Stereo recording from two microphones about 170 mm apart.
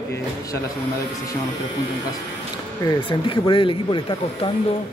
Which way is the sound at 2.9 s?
30° left (ahead or behind).